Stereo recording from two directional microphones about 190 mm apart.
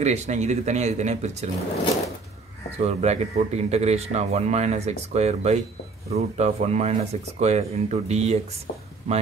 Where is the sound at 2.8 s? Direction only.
35° right (ahead or behind).